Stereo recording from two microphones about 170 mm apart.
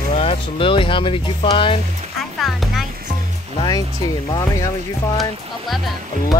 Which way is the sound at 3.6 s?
20° left (ahead or behind).